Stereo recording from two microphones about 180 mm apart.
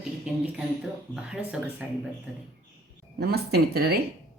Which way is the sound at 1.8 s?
5° right (ahead or behind).